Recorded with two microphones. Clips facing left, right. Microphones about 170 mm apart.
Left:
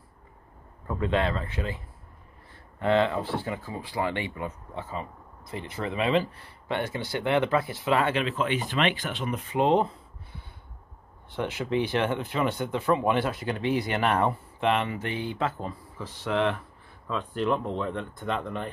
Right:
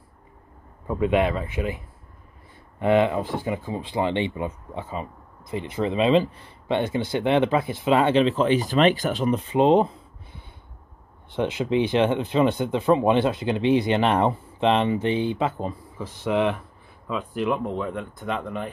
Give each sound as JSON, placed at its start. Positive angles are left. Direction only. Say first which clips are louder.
{"t": 0.8, "sound": "speech", "louder": "right 5 dB", "side_deg": -15}
{"t": 2.8, "sound": "speech", "louder": "right 4 dB", "side_deg": -15}